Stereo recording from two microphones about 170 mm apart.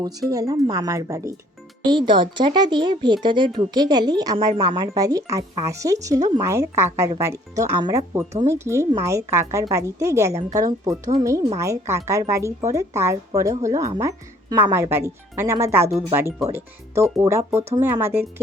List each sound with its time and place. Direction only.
0.0 s a woman's voice: 20° right (ahead or behind)
17.6 s speech: 40° right (ahead or behind)
18.0 s a woman's voice: 15° right (ahead or behind)